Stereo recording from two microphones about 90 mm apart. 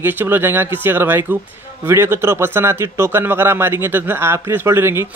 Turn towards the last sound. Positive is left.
turn(degrees=-30)  # may be behind; listen again after turning